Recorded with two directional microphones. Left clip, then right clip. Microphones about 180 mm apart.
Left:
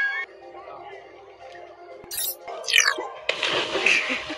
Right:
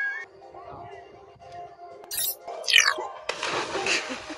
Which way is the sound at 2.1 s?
Centre (ahead or behind).